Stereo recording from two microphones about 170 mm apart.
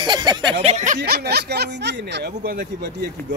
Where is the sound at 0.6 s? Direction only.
45° right (ahead or behind); by 2.9 s 60° right (ahead or behind).